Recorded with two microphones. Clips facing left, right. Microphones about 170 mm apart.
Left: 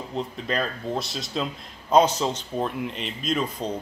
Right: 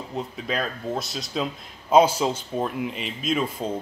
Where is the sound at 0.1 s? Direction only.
5° right (ahead or behind).